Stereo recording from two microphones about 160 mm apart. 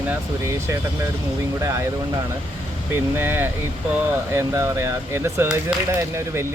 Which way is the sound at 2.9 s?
15° right (ahead or behind).